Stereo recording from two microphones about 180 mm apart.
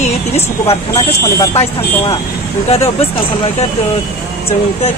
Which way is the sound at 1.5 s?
35° left (ahead or behind).